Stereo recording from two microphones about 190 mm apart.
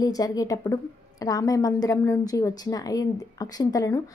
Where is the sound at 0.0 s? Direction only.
20° left (ahead or behind).